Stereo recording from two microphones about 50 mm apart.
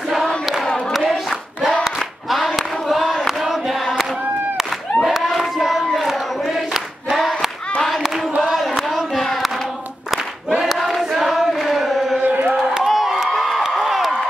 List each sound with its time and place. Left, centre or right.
2.0 s battle cry: centre
3.3 s choir: centre
5.0 s hands: centre
5.9 s choir: centre
7.8 s a sound: centre
10.1 s choir: centre
12.2 s a sound: right
12.8 s crowd: centre